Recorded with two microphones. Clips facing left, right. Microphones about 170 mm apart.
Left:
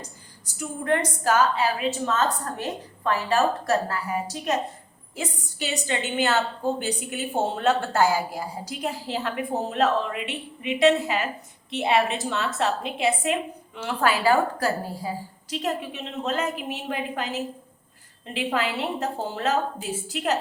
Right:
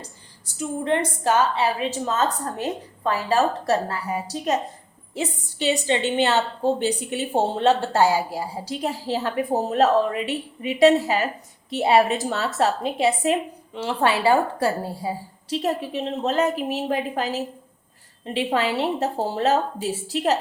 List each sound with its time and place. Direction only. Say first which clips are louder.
0.6 s a woman's voice: right 2 dB; 25° right (ahead or behind)